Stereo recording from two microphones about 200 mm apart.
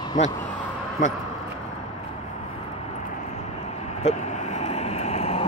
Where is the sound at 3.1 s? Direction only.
35° left (ahead or behind).